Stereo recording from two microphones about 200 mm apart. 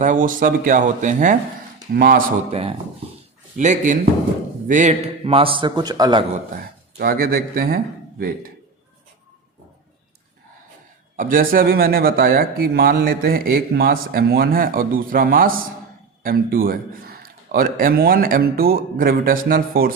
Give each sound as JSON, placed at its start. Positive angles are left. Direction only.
{"t": 0.0, "sound": "speech", "side_deg": -40}
{"t": 2.5, "sound": "a man's voice", "side_deg": -30}
{"t": 6.9, "sound": "speech", "side_deg": -50}
{"t": 11.2, "sound": "speech", "side_deg": -45}